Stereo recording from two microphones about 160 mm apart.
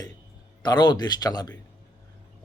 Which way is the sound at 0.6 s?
25° left (ahead or behind).